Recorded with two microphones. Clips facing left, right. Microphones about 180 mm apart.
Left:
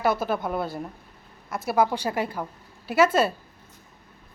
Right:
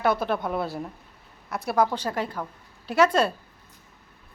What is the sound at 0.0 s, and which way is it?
A woman's voice, 5° left (ahead or behind).